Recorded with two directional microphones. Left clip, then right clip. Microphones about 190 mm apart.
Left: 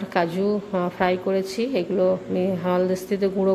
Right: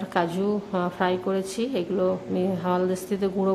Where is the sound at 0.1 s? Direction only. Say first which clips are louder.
Left 3 dB; 5° left (ahead or behind).